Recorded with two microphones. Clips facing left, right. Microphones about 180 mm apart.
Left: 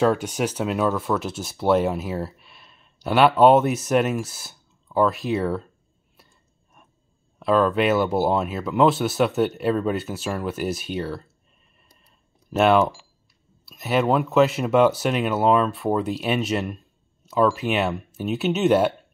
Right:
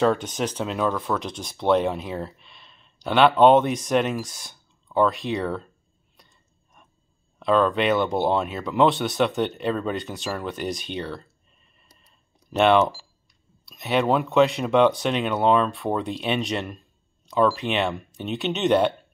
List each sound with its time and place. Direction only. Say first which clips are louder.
0.0 s speech: left 1 dB; 5° left (ahead or behind)
6.1 s a sound: left 1 dB; 5° left (ahead or behind)
7.3 s speech: left 1 dB; 5° left (ahead or behind)
12.4 s speech: even; 5° left (ahead or behind)